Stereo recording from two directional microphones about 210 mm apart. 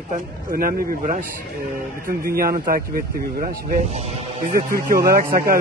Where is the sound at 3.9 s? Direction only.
30° right (ahead or behind).